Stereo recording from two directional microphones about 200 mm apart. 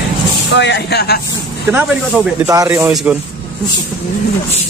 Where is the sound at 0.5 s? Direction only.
60° left (ahead or behind).